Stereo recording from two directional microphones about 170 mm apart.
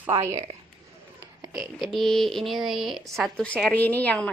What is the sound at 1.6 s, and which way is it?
Speech, centre (ahead or behind).